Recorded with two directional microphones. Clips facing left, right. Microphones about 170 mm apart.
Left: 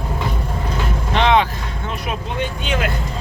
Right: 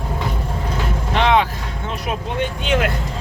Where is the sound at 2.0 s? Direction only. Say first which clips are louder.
Right 2 dB; 50° right (ahead or behind); by 2.9 s 65° right (ahead or behind).